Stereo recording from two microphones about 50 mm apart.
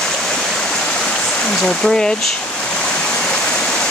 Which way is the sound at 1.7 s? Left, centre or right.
Centre.